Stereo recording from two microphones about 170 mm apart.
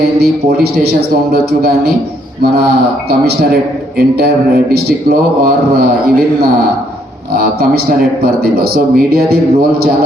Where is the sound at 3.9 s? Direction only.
70° right (ahead or behind).